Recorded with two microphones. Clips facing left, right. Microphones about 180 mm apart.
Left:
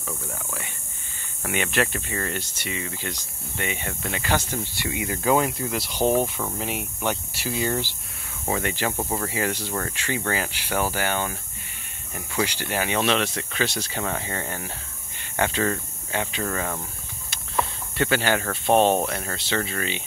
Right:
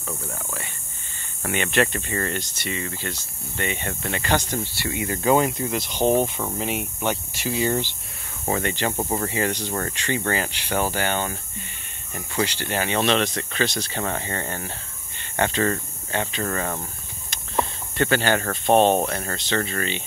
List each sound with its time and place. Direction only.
1.4 s speech: 5° left (ahead or behind)
5.8 s speech: 20° right (ahead or behind)
6.4 s speech: centre (ahead or behind)
8.9 s speech: 10° right (ahead or behind)
9.3 s speech: 5° left (ahead or behind)
17.9 s speech: 10° left (ahead or behind)